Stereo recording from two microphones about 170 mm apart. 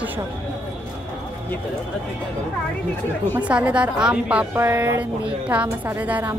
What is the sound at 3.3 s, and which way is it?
A woman's voice, 10° right (ahead or behind).